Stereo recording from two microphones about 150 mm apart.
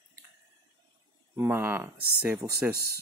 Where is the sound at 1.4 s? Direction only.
15° right (ahead or behind).